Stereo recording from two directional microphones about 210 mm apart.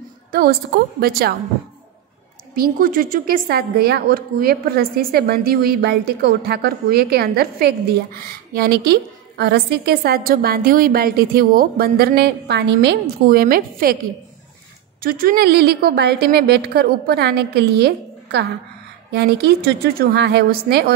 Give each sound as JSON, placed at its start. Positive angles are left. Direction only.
{"t": 0.3, "sound": "a woman's voice", "side_deg": -50}
{"t": 2.5, "sound": "a woman's voice", "side_deg": -45}
{"t": 15.0, "sound": "a woman's voice", "side_deg": -45}